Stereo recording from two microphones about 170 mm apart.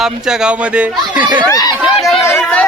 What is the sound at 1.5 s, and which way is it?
Speech, 20° left (ahead or behind).